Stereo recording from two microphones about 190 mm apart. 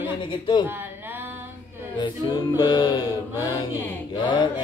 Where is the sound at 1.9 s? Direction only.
25° left (ahead or behind).